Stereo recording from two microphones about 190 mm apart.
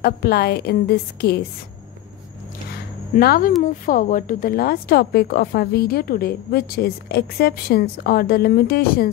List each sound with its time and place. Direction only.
0.0 s a woman's voice: 55° left (ahead or behind)
2.7 s a sound: 55° left (ahead or behind)
3.6 s speech: 45° left (ahead or behind)